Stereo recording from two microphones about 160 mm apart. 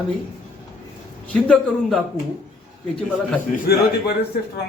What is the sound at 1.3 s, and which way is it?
Speech, 5° left (ahead or behind).